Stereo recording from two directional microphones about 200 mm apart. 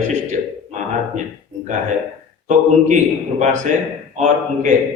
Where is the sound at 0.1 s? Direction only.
35° right (ahead or behind).